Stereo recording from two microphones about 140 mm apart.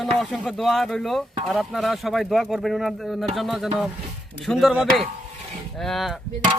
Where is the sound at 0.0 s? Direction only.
Centre (ahead or behind).